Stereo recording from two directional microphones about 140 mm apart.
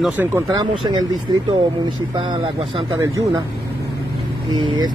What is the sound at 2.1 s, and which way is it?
Speech, 35° right (ahead or behind).